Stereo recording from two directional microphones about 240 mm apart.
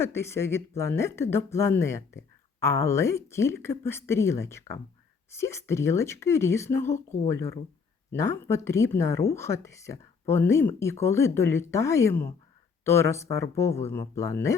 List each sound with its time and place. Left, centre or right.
0.0 s speech: centre